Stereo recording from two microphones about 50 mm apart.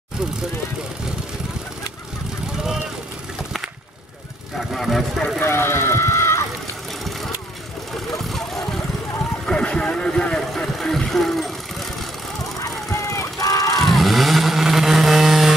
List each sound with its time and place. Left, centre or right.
4.6 s speech: centre
5.4 s run: left
8.2 s vehicle: centre
9.5 s vehicle: centre
12.9 s vehicle: left
13.7 s vehicle: centre